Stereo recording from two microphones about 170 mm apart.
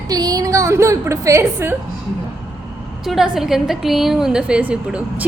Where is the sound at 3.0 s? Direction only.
Centre (ahead or behind).